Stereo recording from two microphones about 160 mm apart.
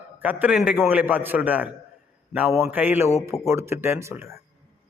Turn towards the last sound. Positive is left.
turn(degrees=-15)  # may be behind; listen again after turning